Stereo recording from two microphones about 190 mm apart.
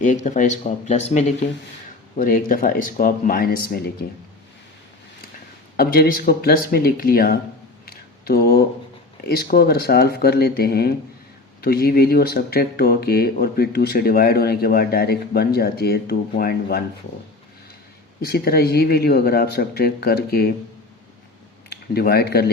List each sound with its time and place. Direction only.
0.0 s speech: 40° left (ahead or behind)
5.7 s speech: 50° left (ahead or behind)
7.9 s a sound: 55° left (ahead or behind)
9.3 s speech: 55° left (ahead or behind)
18.2 s speech: 55° left (ahead or behind)
21.7 s speech: 55° left (ahead or behind)